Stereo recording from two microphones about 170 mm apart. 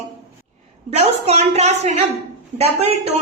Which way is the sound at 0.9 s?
40° right (ahead or behind).